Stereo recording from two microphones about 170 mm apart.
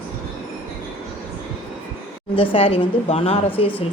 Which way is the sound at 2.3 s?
35° left (ahead or behind).